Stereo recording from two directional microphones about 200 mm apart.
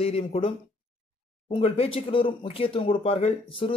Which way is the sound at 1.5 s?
30° left (ahead or behind).